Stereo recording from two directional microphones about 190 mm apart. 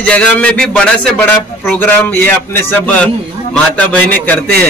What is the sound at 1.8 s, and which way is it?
A man's voice, 10° left (ahead or behind).